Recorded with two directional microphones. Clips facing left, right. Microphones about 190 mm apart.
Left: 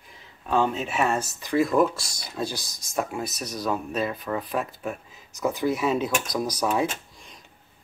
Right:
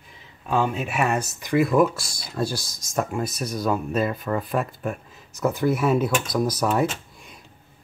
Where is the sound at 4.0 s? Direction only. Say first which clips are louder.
Right 3 dB; centre (ahead or behind).